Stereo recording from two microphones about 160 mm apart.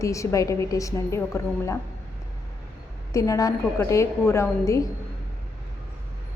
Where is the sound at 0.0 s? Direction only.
20° left (ahead or behind).